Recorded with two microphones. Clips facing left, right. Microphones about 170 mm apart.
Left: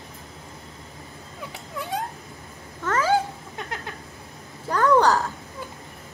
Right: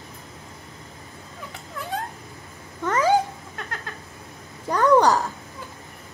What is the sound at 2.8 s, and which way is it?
Cat, 15° right (ahead or behind).